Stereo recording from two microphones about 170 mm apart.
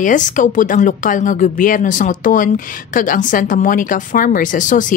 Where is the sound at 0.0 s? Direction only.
50° left (ahead or behind).